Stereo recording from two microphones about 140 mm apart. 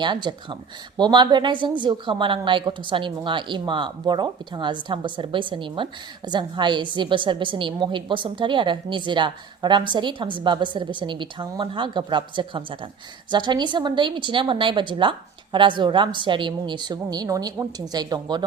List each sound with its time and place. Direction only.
0.0 s a woman's voice: 35° right (ahead or behind)